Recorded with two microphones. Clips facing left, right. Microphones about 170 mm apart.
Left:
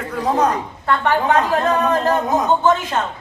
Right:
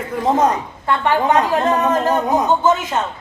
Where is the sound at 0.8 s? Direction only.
15° right (ahead or behind).